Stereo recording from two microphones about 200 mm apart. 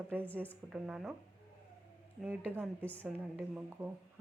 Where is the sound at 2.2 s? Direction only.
10° right (ahead or behind).